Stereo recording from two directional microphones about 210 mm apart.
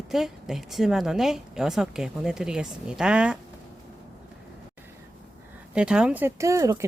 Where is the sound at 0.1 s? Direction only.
Centre (ahead or behind).